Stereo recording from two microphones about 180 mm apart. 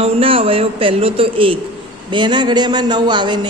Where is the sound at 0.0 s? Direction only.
30° right (ahead or behind).